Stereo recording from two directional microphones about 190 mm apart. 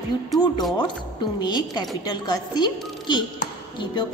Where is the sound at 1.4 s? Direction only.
20° left (ahead or behind).